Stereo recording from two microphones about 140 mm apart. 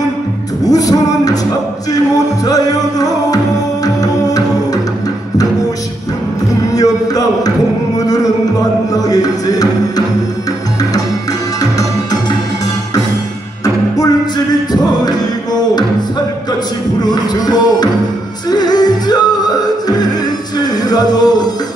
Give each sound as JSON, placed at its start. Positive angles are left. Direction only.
{"t": 0.7, "sound": "music", "side_deg": 25}
{"t": 6.7, "sound": "music", "side_deg": 25}
{"t": 8.9, "sound": "music", "side_deg": 25}
{"t": 17.0, "sound": "music", "side_deg": 30}
{"t": 20.6, "sound": "music", "side_deg": 30}